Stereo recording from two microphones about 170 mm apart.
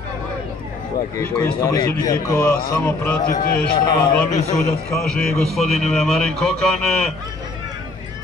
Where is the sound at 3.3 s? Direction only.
60° left (ahead or behind).